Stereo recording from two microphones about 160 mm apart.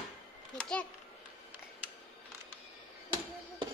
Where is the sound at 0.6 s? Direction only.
5° left (ahead or behind).